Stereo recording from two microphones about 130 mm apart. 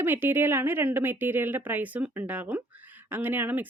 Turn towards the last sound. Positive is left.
turn(degrees=-15)  # may be behind; listen again after turning